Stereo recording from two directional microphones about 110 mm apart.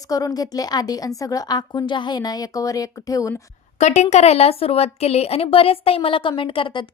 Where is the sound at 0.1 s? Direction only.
35° left (ahead or behind).